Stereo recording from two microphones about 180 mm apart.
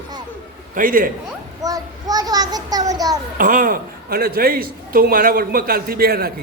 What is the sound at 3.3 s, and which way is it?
A man's voice, 50° right (ahead or behind).